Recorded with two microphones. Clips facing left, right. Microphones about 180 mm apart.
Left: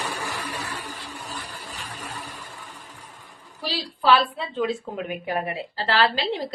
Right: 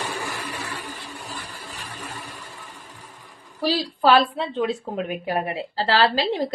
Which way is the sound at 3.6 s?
40° right (ahead or behind).